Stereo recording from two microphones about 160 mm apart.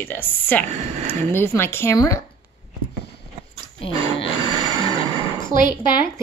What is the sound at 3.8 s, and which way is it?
Speech, 35° left (ahead or behind).